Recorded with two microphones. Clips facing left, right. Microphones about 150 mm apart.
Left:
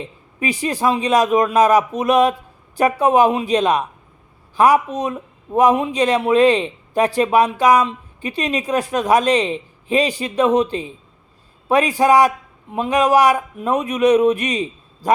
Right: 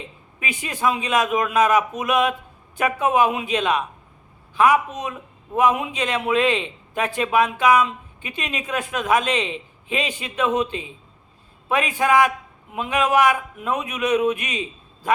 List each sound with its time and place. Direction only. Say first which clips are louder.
0.3 s a man's voice: left 8 dB; 35° left (ahead or behind)